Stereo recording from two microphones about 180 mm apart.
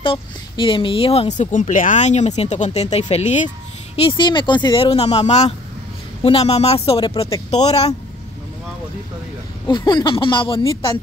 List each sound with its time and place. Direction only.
0.0 s speech: 30° left (ahead or behind)
9.7 s speech: 25° left (ahead or behind)